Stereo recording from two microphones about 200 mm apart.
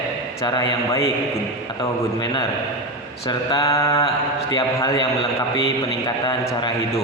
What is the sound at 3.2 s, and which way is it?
Mantra, 20° left (ahead or behind).